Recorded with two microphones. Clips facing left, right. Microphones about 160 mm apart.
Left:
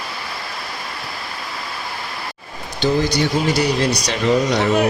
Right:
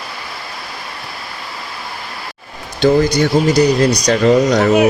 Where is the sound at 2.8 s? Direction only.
45° right (ahead or behind).